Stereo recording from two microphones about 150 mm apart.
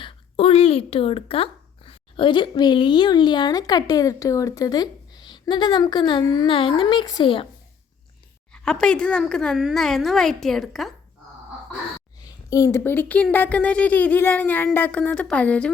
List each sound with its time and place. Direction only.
0.0 s speech: 40° left (ahead or behind)
8.5 s speech: 5° left (ahead or behind)
12.5 s speech: 20° left (ahead or behind)